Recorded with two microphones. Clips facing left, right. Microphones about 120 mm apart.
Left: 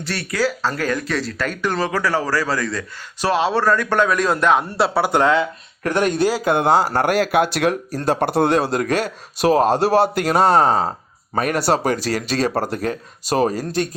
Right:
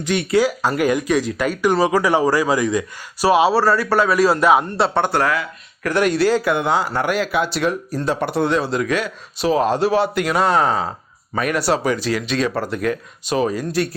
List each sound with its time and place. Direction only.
0.0 s speech: 15° right (ahead or behind)
4.6 s speech: 5° left (ahead or behind)
5.1 s speech: 25° left (ahead or behind)
6.4 s speech: 35° left (ahead or behind); by 8.0 s 55° left (ahead or behind)
8.0 s speech: 45° left (ahead or behind)